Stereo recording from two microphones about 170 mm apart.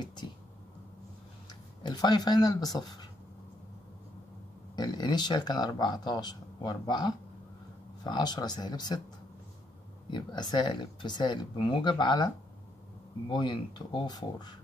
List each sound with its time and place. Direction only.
0.0 s speech: 25° left (ahead or behind)
1.5 s speech: 25° left (ahead or behind)
4.7 s speech: 25° left (ahead or behind)
10.1 s speech: 25° left (ahead or behind)
13.3 s speech: 25° left (ahead or behind)